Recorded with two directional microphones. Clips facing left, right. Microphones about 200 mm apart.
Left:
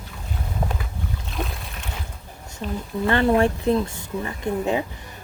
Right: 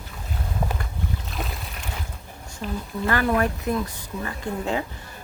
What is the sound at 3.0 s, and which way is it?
A woman's voice, 25° left (ahead or behind).